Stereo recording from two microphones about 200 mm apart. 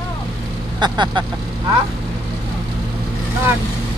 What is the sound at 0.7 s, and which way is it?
Speech, 20° right (ahead or behind).